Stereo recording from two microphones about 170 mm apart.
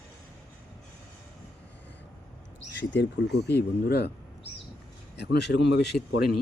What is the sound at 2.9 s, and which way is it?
Speech, 85° left.